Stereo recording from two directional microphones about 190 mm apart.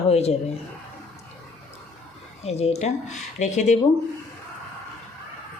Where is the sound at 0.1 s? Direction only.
35° left (ahead or behind).